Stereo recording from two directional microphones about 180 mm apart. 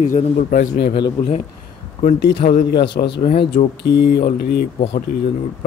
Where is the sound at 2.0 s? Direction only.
45° left (ahead or behind); by 4.3 s 60° left (ahead or behind).